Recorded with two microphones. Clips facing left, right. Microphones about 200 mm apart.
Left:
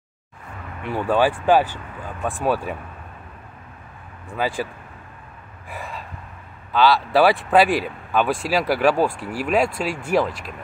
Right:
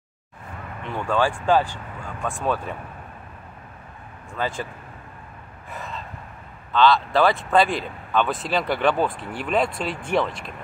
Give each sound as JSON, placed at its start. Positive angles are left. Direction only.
{"t": 0.8, "sound": "speech", "side_deg": 10}
{"t": 4.3, "sound": "speech", "side_deg": 15}
{"t": 6.7, "sound": "speech", "side_deg": 10}